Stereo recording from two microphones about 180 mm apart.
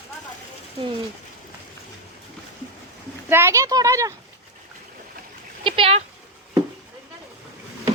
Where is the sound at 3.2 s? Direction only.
15° right (ahead or behind).